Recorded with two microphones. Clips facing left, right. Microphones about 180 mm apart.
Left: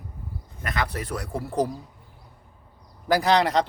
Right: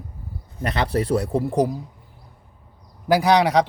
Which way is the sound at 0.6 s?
30° right (ahead or behind).